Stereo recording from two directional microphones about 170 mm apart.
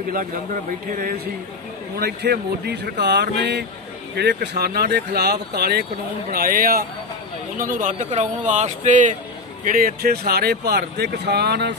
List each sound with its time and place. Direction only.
0.1 s a man's voice: 55° right (ahead or behind); by 11.7 s 75° right (ahead or behind)